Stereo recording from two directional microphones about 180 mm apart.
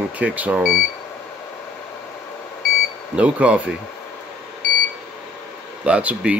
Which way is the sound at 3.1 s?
5° right (ahead or behind).